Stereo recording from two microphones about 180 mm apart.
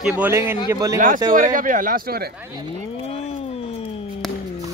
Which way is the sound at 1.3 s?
50° right (ahead or behind).